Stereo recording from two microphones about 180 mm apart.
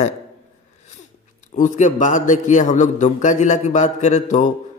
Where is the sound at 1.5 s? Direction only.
45° left (ahead or behind).